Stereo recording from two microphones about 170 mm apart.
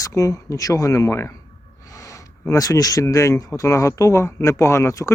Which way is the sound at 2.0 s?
20° left (ahead or behind).